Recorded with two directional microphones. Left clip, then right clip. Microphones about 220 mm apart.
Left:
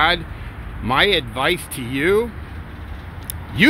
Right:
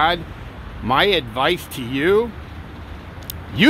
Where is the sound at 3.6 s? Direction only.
5° right (ahead or behind).